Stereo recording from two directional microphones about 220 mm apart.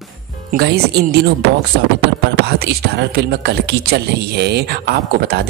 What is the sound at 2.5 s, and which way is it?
Speech, 45° right (ahead or behind).